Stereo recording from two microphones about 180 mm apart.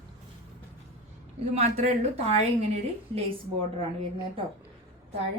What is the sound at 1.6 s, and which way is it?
Speech, 35° right (ahead or behind).